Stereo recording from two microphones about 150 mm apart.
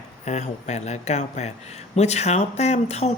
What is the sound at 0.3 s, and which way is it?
Speech, 50° left (ahead or behind).